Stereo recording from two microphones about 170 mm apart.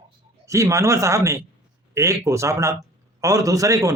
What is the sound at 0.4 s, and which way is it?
A man's voice, 20° right (ahead or behind).